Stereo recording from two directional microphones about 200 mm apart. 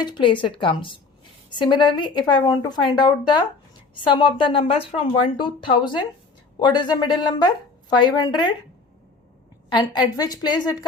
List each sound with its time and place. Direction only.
0.0 s a woman's voice: 25° left (ahead or behind)
9.6 s a woman's voice: 20° left (ahead or behind)